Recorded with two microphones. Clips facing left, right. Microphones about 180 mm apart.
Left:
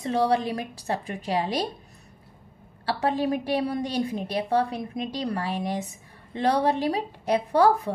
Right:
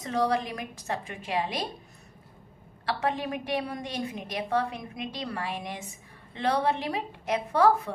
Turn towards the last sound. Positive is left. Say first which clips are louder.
# left 2 dB
turn(degrees=35)  # may be behind; listen again after turning